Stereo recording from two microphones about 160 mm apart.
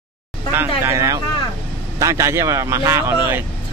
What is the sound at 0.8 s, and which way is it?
Speech, 15° right (ahead or behind).